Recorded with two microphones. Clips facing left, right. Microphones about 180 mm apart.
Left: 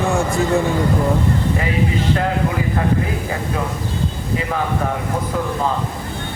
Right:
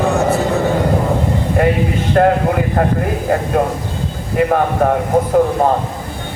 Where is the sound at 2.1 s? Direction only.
55° right (ahead or behind).